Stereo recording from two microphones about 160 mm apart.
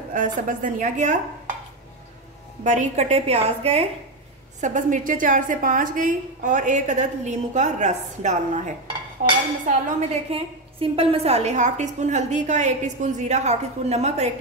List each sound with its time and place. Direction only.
0.1 s a woman's voice: 55° right (ahead or behind)
2.6 s a woman's voice: 50° right (ahead or behind)
4.6 s a woman's voice: 55° right (ahead or behind)
10.3 s a woman's voice: 35° right (ahead or behind)